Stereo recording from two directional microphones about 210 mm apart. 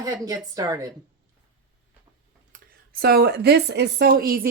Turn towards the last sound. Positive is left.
turn(degrees=-45)  # may be behind; listen again after turning